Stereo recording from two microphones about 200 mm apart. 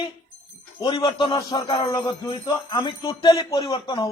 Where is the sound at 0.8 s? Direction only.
20° left (ahead or behind).